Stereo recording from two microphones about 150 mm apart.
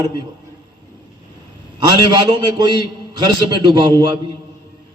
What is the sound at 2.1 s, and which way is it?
A man's voice, 30° right (ahead or behind).